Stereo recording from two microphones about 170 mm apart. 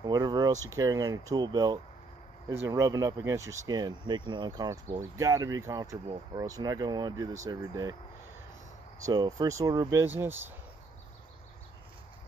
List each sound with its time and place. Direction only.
0.0 s a sound: 25° right (ahead or behind)
0.7 s speech: 20° right (ahead or behind)
9.0 s speech: 25° right (ahead or behind)